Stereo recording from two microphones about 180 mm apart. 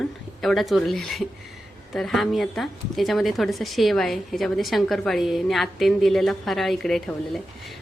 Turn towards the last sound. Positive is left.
turn(degrees=0)  # may be behind; listen again after turning